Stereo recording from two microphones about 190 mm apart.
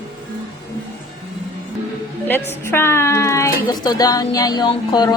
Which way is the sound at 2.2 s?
10° left (ahead or behind).